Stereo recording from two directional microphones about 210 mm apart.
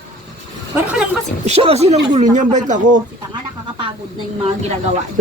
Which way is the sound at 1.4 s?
30° right (ahead or behind).